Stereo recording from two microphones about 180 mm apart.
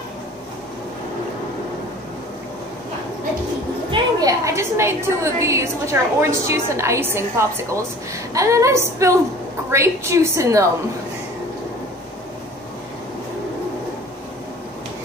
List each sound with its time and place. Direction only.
3.9 s a woman's voice: 20° right (ahead or behind)